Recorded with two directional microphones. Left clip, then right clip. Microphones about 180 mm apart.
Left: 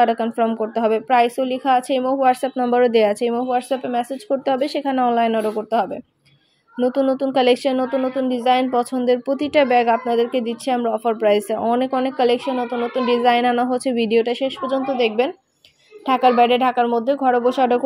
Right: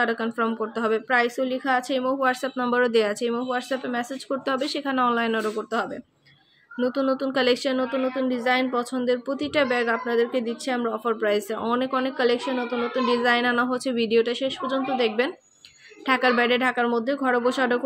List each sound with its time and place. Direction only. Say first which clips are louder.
0.0 s a woman's voice: left 7 dB; 15° left (ahead or behind)